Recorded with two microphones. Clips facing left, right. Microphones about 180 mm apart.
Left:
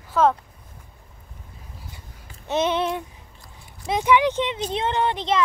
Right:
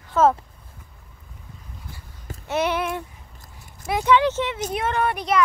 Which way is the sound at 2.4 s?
20° left (ahead or behind).